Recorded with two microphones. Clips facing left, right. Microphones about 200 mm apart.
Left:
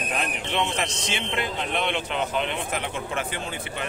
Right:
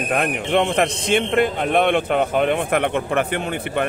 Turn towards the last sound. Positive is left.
turn(degrees=-60)  # may be behind; listen again after turning